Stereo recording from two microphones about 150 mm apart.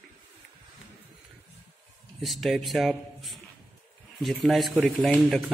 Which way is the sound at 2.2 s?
Centre (ahead or behind).